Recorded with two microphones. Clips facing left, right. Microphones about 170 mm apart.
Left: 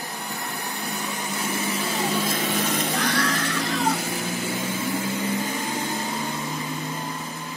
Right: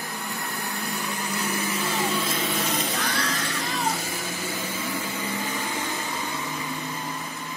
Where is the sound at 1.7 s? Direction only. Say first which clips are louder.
Left 1 dB; 40° left (ahead or behind); by 3.2 s 60° left (ahead or behind).